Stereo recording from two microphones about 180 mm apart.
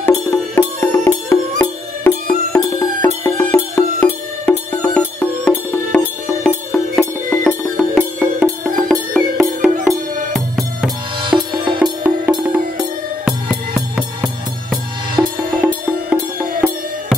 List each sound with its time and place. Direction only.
0.0 s music: 15° left (ahead or behind)
9.1 s music: centre (ahead or behind)
11.2 s music: 25° right (ahead or behind)
11.8 s music: 5° right (ahead or behind)